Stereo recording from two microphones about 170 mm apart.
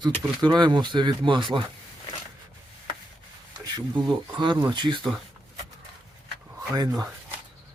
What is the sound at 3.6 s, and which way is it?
Speech, 25° right (ahead or behind).